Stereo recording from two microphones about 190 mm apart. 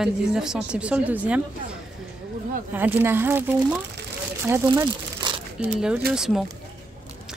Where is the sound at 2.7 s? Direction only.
10° right (ahead or behind).